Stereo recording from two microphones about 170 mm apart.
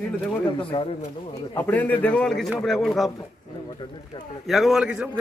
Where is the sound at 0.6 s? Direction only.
30° left (ahead or behind).